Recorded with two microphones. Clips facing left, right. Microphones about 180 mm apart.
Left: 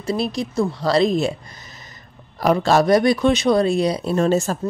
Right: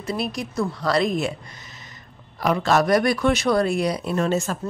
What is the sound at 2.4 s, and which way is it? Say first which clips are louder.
Speech: left 4 dB; 35° left (ahead or behind).